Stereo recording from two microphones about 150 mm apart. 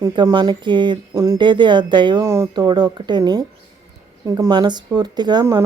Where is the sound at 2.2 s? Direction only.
20° right (ahead or behind).